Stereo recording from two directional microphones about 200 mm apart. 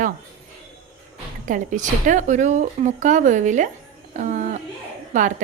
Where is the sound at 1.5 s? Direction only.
40° right (ahead or behind).